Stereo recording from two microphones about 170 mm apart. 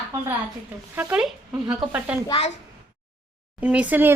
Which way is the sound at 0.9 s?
10° right (ahead or behind).